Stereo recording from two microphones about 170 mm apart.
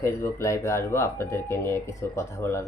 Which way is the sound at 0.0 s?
15° left (ahead or behind).